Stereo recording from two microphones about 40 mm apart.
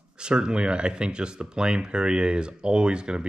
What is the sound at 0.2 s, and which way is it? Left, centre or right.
Speech, right.